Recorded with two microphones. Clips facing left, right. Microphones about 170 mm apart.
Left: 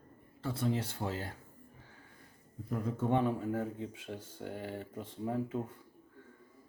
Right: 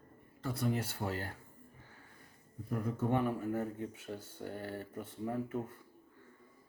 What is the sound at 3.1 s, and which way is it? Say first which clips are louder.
Speech: left 2 dB; 20° left (ahead or behind).